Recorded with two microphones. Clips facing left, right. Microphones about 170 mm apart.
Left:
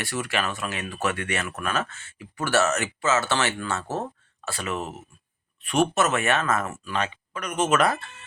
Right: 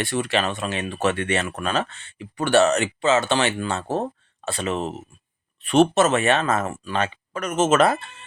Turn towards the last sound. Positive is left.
turn(degrees=-25)  # may be behind; listen again after turning